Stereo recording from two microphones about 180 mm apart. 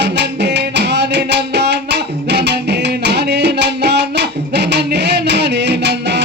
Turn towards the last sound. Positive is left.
turn(degrees=-70)  # may be behind; listen again after turning